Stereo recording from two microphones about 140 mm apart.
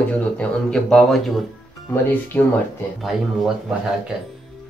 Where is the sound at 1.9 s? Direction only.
15° left (ahead or behind).